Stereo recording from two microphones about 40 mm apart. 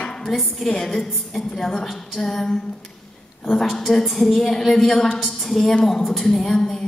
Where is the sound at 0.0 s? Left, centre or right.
Centre.